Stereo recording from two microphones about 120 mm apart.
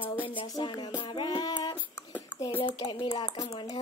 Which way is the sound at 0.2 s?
45° left (ahead or behind).